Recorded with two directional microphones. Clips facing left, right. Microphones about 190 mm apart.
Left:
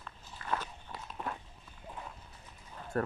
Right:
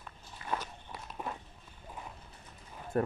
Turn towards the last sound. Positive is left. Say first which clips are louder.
# right 2 dB
turn(degrees=-15)  # may be behind; listen again after turning